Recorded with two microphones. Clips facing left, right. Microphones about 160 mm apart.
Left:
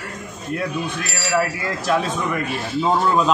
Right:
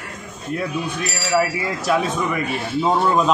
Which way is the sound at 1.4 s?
Centre (ahead or behind).